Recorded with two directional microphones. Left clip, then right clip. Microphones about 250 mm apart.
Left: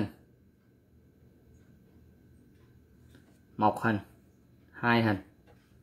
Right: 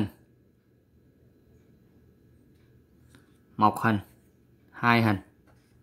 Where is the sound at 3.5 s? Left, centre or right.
Right.